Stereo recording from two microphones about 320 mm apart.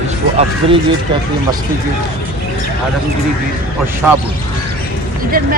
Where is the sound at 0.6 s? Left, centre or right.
Centre.